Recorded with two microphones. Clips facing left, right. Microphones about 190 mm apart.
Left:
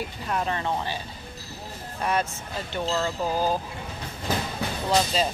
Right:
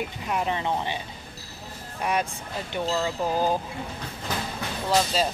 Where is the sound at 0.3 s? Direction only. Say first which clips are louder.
Right 1 dB; 15° right (ahead or behind).